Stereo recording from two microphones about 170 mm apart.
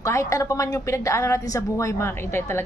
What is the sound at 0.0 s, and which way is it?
A woman's voice, 15° left (ahead or behind).